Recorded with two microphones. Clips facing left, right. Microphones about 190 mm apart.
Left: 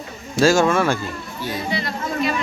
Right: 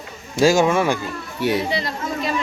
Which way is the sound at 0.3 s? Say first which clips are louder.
Even; 15° right (ahead or behind).